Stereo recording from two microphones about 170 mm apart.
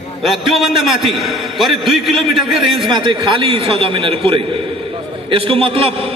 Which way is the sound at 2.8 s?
30° right (ahead or behind).